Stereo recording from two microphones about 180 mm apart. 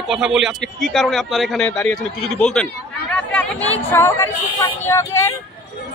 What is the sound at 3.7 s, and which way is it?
A woman's voice, 15° left (ahead or behind).